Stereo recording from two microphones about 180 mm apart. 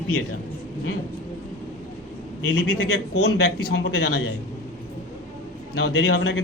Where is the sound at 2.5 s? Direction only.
60° left (ahead or behind).